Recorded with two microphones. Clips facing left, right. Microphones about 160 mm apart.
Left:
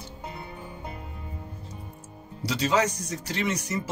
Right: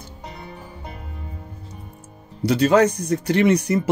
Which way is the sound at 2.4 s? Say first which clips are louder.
Right 9 dB; 55° right (ahead or behind).